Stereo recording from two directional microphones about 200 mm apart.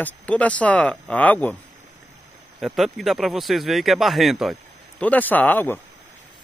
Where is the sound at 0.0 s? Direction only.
5° left (ahead or behind).